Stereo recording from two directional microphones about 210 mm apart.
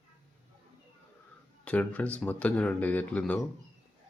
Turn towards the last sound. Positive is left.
turn(degrees=5)  # may be behind; listen again after turning